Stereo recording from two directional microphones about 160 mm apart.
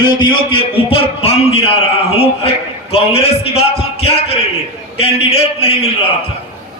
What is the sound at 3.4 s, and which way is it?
A man's voice, 40° left (ahead or behind).